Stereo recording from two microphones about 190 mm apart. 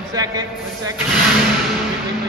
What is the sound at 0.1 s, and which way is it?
Speech, 20° right (ahead or behind).